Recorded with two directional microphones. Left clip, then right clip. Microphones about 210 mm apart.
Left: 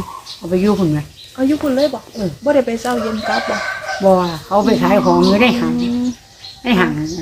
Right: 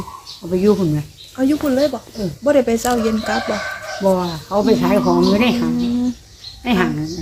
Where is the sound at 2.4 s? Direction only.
40° right (ahead or behind).